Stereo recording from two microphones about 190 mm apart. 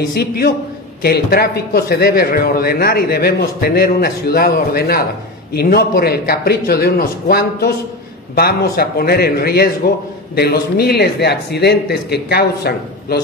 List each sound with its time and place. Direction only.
0.1 s a man's voice: 55° left (ahead or behind)